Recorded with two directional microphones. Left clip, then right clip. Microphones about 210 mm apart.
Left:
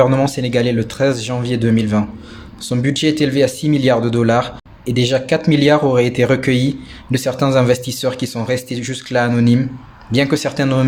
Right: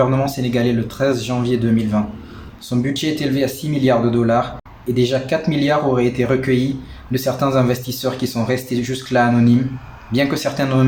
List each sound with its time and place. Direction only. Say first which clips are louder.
0.0 s speech: left 4 dB; 45° left (ahead or behind)